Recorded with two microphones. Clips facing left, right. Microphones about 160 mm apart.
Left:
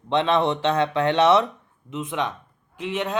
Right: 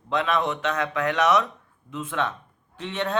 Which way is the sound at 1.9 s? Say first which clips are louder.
Left 1 dB; 20° left (ahead or behind).